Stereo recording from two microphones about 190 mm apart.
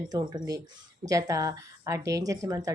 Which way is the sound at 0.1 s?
20° right (ahead or behind).